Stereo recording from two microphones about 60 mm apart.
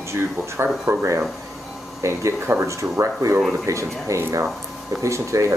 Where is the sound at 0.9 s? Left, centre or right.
Right.